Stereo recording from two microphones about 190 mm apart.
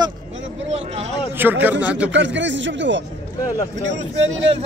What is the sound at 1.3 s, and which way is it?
Speech, 10° right (ahead or behind).